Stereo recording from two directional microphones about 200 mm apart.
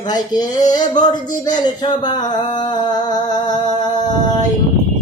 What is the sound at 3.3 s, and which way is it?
Speech, 20° left (ahead or behind).